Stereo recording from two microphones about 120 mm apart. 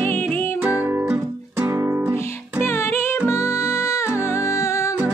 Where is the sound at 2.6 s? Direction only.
20° left (ahead or behind).